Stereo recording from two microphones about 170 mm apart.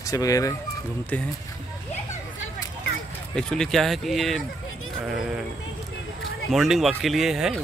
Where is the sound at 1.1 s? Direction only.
10° left (ahead or behind).